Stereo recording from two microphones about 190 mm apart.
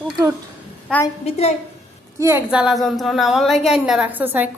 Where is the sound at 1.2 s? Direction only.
35° left (ahead or behind).